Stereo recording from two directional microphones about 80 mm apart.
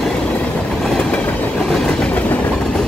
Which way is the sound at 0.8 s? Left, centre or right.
Centre.